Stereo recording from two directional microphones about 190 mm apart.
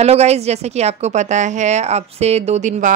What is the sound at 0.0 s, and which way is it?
Speech, 35° right (ahead or behind).